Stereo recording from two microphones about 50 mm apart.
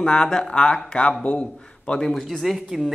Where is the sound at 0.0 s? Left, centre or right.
Centre.